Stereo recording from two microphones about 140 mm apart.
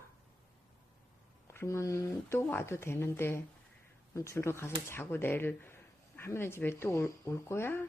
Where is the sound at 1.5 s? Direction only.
20° left (ahead or behind).